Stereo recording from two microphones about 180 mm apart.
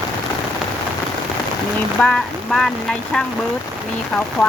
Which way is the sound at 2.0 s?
5° left (ahead or behind).